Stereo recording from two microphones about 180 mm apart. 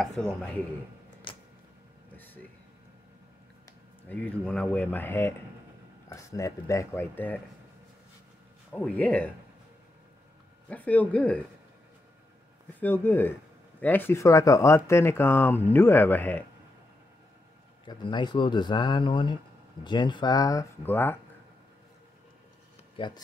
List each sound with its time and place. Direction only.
0.0 s speech: 5° left (ahead or behind)
2.1 s a sound: 10° left (ahead or behind)
4.1 s speech: 5° left (ahead or behind)
8.7 s speech: 10° left (ahead or behind)
10.7 s speech: 10° left (ahead or behind)
12.8 s speech: 10° left (ahead or behind)
17.8 s speech: 25° left (ahead or behind)
22.9 s speech: 25° left (ahead or behind)